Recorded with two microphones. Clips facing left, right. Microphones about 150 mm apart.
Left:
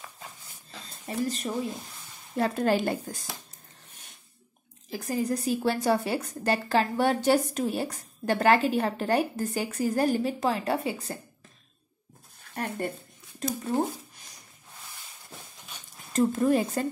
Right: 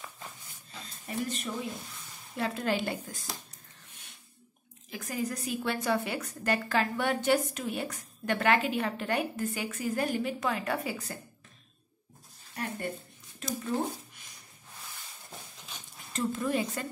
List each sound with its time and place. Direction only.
1.0 s a woman's voice: 35° left (ahead or behind)
4.8 s a woman's voice: 35° left (ahead or behind)
12.5 s a sound: 60° left (ahead or behind)
13.5 s speech: 40° left (ahead or behind)
16.1 s speech: 45° left (ahead or behind)